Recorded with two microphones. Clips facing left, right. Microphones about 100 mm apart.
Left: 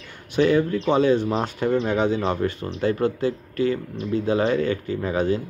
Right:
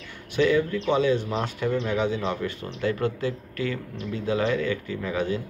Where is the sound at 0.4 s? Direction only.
40° left (ahead or behind).